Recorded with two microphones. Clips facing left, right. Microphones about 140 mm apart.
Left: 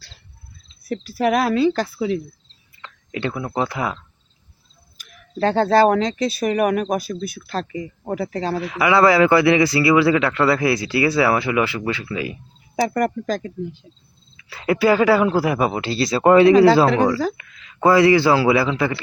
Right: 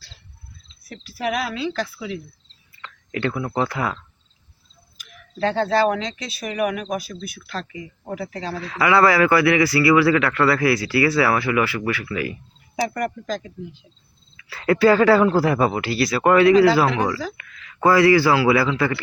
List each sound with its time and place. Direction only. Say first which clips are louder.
0.9 s speech: left 6 dB; 45° left (ahead or behind)
2.7 s speech: right 1 dB; 20° left (ahead or behind)
4.9 s speech: left 3 dB; 40° left (ahead or behind)
8.5 s speech: even; 15° left (ahead or behind)
12.7 s speech: left 4 dB; 40° left (ahead or behind)
14.3 s speech: right 1 dB; 15° left (ahead or behind)